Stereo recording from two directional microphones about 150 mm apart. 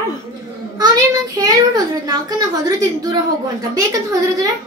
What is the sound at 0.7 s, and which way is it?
A child's voice, 25° right (ahead or behind).